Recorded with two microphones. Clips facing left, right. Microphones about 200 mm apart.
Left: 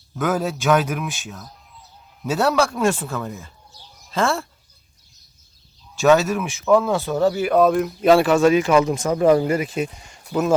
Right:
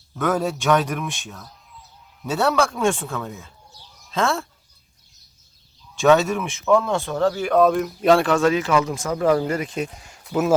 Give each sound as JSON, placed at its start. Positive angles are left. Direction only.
{"t": 0.2, "sound": "speech", "side_deg": 5}
{"t": 6.0, "sound": "speech", "side_deg": 0}